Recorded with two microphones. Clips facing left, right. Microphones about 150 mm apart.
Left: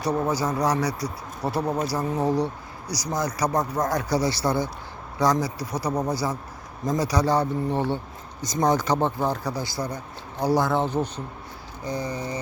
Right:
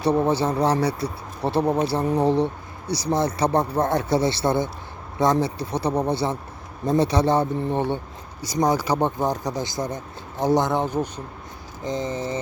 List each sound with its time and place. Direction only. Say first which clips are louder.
0.0 s speech: right 4 dB; 30° right (ahead or behind)
8.4 s speech: right 1 dB; 10° right (ahead or behind)